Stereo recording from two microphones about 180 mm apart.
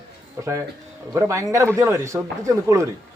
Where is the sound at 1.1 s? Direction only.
15° right (ahead or behind).